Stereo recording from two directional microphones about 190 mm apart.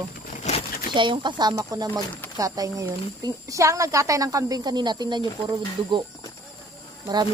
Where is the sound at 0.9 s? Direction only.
25° right (ahead or behind).